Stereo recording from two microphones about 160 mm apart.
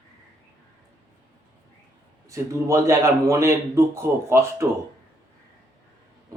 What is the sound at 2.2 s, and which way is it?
A man's voice, 20° right (ahead or behind).